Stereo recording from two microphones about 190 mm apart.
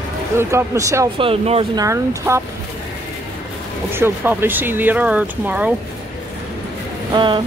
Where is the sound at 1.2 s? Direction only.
30° right (ahead or behind).